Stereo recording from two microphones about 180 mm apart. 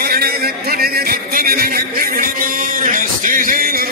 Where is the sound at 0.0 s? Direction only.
55° right (ahead or behind).